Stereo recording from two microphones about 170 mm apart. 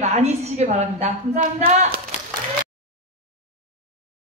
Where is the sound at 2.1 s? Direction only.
40° left (ahead or behind).